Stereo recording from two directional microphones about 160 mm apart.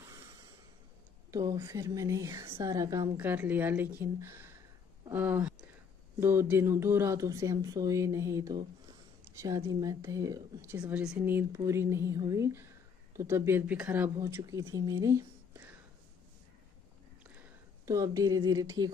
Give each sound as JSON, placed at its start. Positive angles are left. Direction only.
{"t": 1.3, "sound": "speech", "side_deg": -20}
{"t": 9.7, "sound": "speech", "side_deg": -20}
{"t": 17.4, "sound": "speech", "side_deg": -20}